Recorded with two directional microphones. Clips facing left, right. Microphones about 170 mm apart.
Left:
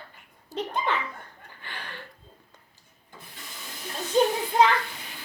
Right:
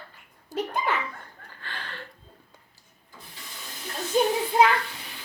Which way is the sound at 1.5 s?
15° left (ahead or behind).